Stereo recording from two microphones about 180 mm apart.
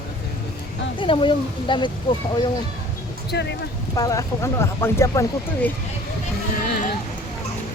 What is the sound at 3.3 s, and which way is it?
Speech, 70° left (ahead or behind).